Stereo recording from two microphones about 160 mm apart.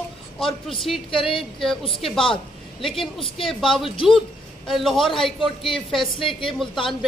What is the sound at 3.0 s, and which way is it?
A woman's voice, 35° left (ahead or behind).